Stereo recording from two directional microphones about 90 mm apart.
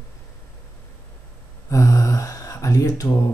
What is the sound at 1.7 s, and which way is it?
Speech, 35° left (ahead or behind).